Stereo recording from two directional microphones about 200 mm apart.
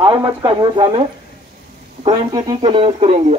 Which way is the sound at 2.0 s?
25° right (ahead or behind).